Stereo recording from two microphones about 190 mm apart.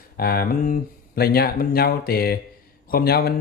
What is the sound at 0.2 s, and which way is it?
Speech, 50° left (ahead or behind).